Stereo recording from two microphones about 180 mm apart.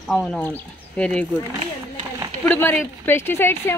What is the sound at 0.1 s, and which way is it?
A woman's voice, centre (ahead or behind).